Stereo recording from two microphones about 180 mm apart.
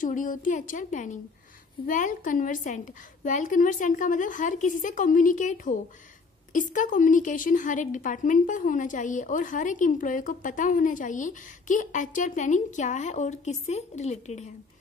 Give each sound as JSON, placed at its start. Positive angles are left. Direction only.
{"t": 0.0, "sound": "a woman's voice", "side_deg": 45}